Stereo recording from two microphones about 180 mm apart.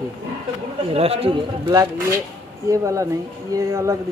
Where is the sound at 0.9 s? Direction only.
35° right (ahead or behind).